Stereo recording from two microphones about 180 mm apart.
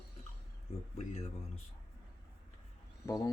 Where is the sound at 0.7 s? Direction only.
35° left (ahead or behind).